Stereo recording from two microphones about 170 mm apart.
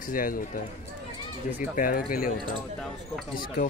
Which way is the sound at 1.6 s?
55° left (ahead or behind).